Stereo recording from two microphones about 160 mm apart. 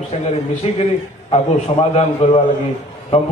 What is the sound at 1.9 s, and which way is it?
Speech, 40° left (ahead or behind).